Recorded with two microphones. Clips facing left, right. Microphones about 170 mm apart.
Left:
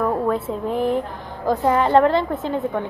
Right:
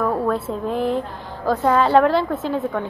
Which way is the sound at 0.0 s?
15° left (ahead or behind).